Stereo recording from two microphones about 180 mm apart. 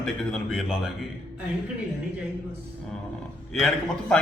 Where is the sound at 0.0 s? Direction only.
Centre (ahead or behind).